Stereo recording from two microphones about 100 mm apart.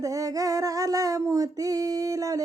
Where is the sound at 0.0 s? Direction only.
35° right (ahead or behind).